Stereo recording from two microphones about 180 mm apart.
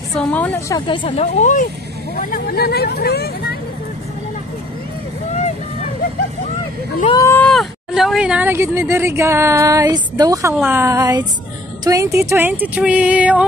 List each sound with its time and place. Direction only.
0.1 s a woman's voice: 10° left (ahead or behind)
0.7 s speech: 25° left (ahead or behind); by 1.7 s 45° left (ahead or behind)
2.1 s speech: 55° left (ahead or behind)
5.3 s vehicle: 40° left (ahead or behind)
7.1 s speech: 15° left (ahead or behind)
7.4 s speech: centre (ahead or behind)